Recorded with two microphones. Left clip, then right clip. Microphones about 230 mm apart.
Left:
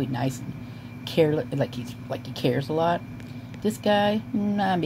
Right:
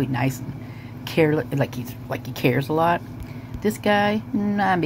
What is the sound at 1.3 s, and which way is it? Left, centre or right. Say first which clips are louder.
Speech: right 3 dB; centre.